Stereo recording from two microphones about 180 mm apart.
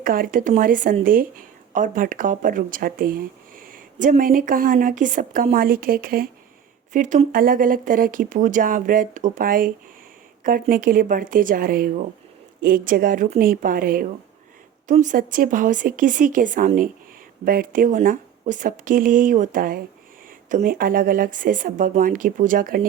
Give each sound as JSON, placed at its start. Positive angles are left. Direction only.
{"t": 0.0, "sound": "speech", "side_deg": -50}